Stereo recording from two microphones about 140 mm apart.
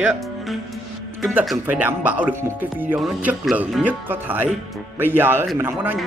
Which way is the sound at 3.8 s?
15° right (ahead or behind).